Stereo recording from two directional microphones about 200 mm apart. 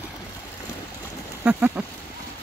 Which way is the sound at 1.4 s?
5° right (ahead or behind).